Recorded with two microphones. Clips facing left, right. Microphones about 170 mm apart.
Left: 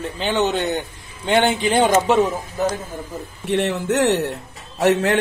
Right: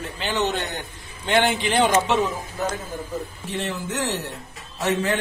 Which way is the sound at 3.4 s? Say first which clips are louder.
Left 12 dB; 65° left (ahead or behind).